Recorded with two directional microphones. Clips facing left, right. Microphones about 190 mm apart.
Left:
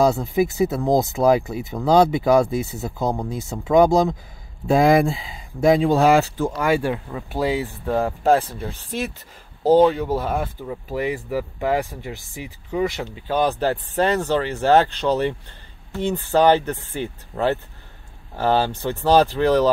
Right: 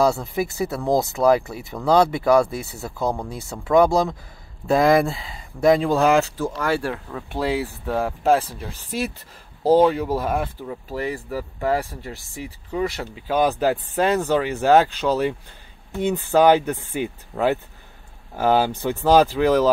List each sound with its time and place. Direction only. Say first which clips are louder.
0.0 s speech: left 2 dB; centre (ahead or behind)
1.5 s speech: left 1 dB; 20° left (ahead or behind)
4.7 s speech: left 1 dB; centre (ahead or behind)
6.3 s speech: left 3 dB; 15° left (ahead or behind); by 19.7 s 5° right (ahead or behind)